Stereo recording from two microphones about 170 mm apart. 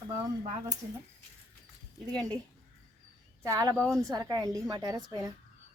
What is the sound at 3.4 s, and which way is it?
Speech, 20° right (ahead or behind).